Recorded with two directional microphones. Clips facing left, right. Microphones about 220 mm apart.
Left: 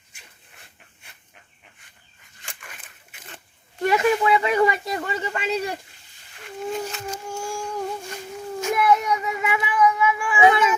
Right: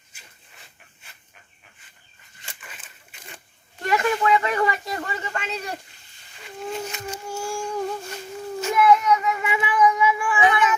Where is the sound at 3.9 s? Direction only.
10° left (ahead or behind).